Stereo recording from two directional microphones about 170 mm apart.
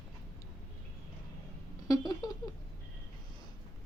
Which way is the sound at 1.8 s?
20° left (ahead or behind).